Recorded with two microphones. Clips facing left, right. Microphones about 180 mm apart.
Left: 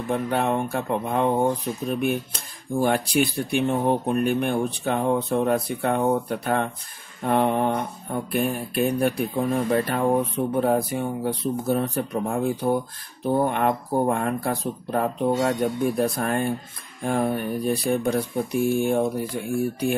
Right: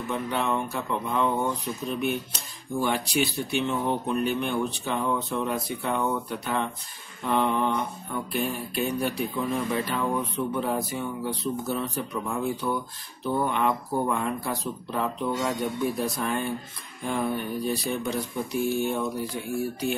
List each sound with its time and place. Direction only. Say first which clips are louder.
0.1 s speech: left 5 dB; 55° left (ahead or behind)